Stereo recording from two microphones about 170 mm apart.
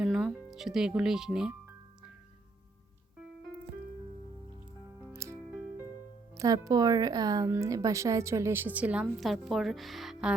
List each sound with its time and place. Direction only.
0.0 s speech: 5° right (ahead or behind)
5.1 s music: 15° right (ahead or behind)
6.3 s speech: 20° right (ahead or behind); by 10.3 s 5° right (ahead or behind)